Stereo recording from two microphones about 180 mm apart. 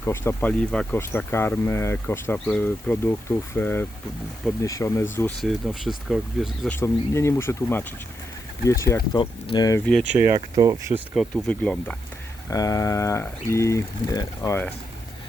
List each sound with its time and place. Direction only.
0.0 s speech: 15° left (ahead or behind)
5.4 s speech: centre (ahead or behind)
6.7 s speech: 15° left (ahead or behind)
10.0 s speech: 10° right (ahead or behind)
10.3 s speech: 25° right (ahead or behind)
11.1 s speech: centre (ahead or behind)
12.5 s speech: 20° left (ahead or behind)